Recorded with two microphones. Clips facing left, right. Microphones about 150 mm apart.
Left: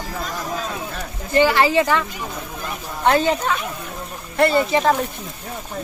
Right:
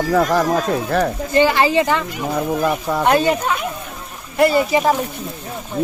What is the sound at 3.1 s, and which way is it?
Speech, 15° right (ahead or behind).